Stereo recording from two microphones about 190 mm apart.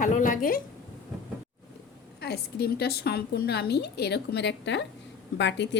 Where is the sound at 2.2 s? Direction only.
60° left (ahead or behind).